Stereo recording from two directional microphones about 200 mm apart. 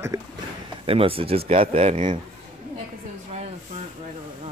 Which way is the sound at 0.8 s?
30° right (ahead or behind).